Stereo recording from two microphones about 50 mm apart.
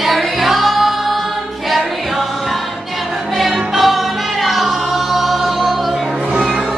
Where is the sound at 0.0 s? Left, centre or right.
Centre.